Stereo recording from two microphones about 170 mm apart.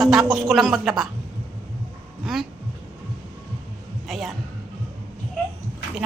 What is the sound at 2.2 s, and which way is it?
Speech, centre (ahead or behind).